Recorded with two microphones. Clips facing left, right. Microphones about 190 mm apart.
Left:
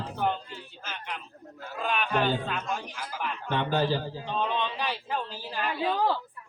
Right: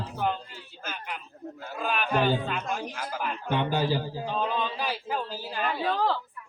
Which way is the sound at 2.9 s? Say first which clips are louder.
Right 2 dB; 50° right (ahead or behind).